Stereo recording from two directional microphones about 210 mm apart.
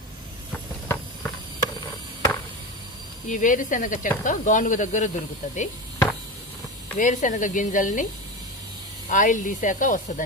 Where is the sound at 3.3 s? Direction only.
40° left (ahead or behind).